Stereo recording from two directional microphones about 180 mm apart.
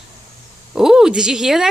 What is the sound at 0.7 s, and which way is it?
Bleat, 5° right (ahead or behind).